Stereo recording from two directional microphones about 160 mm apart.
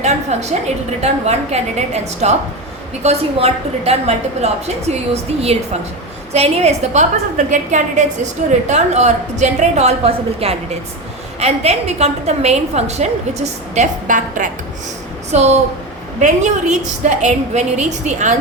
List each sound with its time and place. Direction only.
0.0 s a woman's voice: 45° right (ahead or behind)